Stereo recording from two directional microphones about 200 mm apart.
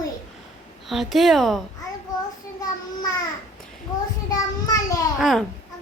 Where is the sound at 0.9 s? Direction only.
Centre (ahead or behind).